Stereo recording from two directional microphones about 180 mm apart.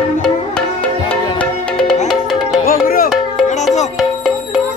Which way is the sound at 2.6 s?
55° left (ahead or behind).